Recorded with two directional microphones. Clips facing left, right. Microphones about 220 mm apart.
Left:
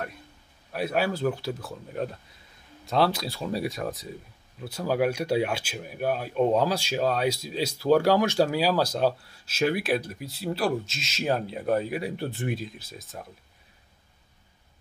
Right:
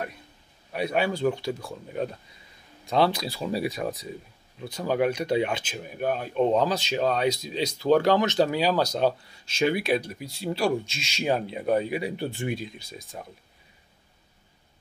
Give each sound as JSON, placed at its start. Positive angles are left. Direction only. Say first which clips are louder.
{"t": 0.7, "sound": "speech", "louder": "right 1 dB", "side_deg": 5}